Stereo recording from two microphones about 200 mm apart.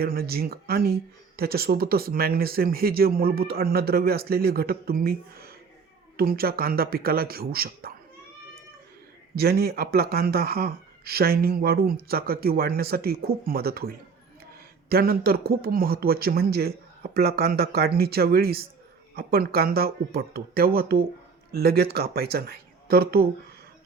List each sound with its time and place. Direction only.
0.0 s speech: 50° right (ahead or behind)
9.3 s speech: 50° right (ahead or behind)